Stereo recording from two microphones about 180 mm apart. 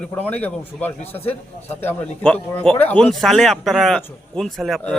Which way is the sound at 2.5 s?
10° left (ahead or behind).